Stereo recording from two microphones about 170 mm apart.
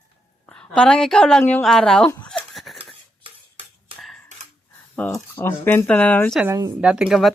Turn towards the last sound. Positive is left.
turn(degrees=0)  # may be behind; listen again after turning